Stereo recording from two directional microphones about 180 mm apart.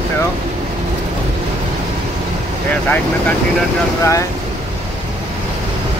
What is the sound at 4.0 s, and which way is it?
Speech, 15° left (ahead or behind).